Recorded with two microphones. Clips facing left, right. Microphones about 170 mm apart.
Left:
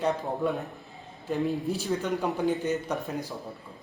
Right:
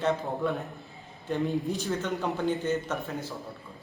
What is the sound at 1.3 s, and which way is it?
Speech, centre (ahead or behind).